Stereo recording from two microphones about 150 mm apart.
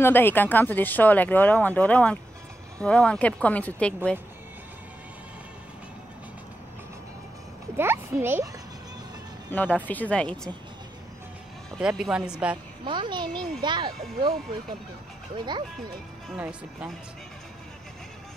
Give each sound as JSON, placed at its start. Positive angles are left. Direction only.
{"t": 0.0, "sound": "speech", "side_deg": 15}
{"t": 7.7, "sound": "a child's voice", "side_deg": -15}
{"t": 9.8, "sound": "speech", "side_deg": 10}
{"t": 11.8, "sound": "a child's voice", "side_deg": -5}
{"t": 12.8, "sound": "speech", "side_deg": -35}
{"t": 15.3, "sound": "speech", "side_deg": -30}
{"t": 16.3, "sound": "a child's voice", "side_deg": -5}